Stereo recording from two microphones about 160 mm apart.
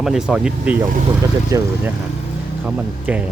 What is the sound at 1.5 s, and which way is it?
Speech, 20° right (ahead or behind).